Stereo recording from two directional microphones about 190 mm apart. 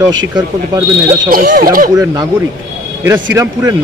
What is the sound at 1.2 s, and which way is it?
Speech, 50° right (ahead or behind).